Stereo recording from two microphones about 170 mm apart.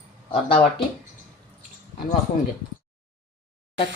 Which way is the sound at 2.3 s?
50° left (ahead or behind).